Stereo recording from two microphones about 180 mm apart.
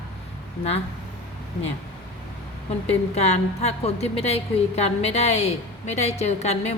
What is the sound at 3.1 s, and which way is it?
A woman's voice, 35° left (ahead or behind).